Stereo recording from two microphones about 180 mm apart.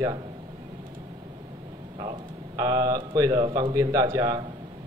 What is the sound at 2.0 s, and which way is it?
Speech, 20° right (ahead or behind).